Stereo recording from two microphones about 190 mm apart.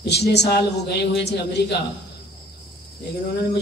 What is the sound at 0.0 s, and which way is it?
Mantra, 60° left (ahead or behind).